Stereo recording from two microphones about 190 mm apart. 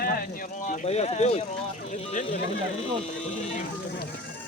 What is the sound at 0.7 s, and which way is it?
Speech, 35° left (ahead or behind).